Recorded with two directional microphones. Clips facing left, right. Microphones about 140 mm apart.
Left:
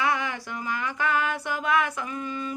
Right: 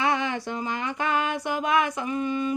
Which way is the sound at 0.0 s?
25° right (ahead or behind).